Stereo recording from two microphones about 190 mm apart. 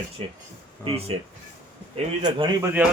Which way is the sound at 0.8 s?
30° right (ahead or behind).